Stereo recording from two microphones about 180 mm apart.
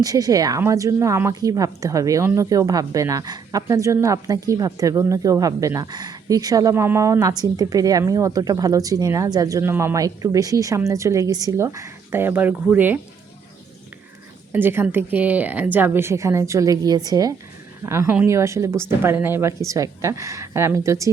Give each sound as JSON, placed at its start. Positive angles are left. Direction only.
{"t": 0.0, "sound": "speech", "side_deg": -20}
{"t": 14.5, "sound": "speech", "side_deg": -10}